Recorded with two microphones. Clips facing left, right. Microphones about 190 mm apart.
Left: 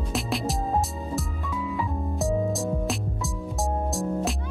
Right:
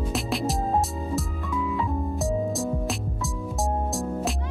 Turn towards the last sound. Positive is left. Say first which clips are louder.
# left 1 dB
turn(degrees=0)  # may be behind; listen again after turning